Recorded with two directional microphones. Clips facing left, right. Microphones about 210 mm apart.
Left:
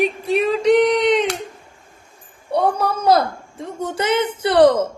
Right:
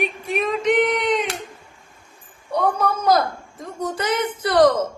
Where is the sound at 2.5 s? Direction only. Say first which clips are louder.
Left 2 dB; 30° left (ahead or behind).